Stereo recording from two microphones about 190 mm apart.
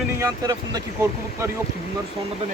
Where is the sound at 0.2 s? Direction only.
20° right (ahead or behind).